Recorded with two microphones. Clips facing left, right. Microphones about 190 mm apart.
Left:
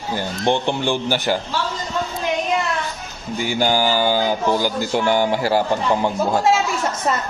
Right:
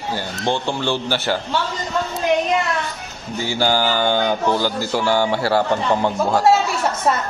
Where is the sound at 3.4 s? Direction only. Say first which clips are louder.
Even; 15° left (ahead or behind).